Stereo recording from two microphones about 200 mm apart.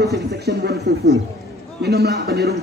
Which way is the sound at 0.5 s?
55° right (ahead or behind).